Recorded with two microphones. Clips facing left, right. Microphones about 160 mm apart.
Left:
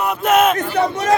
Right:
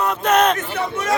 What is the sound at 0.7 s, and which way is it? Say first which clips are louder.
Speech: left 6 dB; 35° left (ahead or behind).